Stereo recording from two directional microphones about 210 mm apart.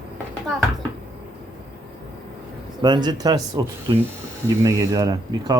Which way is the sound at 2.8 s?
20° right (ahead or behind).